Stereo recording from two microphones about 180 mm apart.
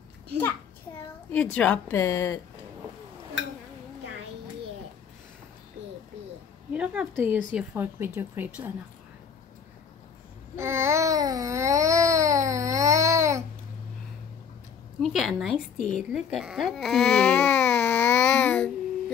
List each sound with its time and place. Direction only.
1.3 s speech: 10° left (ahead or behind)
6.7 s speech: 5° right (ahead or behind)
10.5 s babbling: 15° right (ahead or behind)
15.0 s a woman's voice: centre (ahead or behind)